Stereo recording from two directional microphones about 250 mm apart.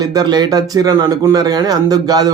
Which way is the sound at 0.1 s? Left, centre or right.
Centre.